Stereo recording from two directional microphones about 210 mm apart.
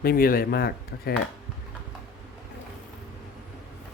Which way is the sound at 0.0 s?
45° left (ahead or behind).